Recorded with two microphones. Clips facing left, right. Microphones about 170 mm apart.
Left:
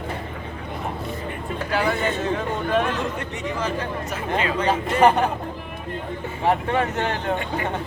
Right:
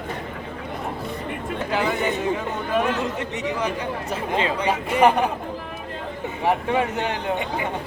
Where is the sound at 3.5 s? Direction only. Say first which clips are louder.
Even; 15° right (ahead or behind).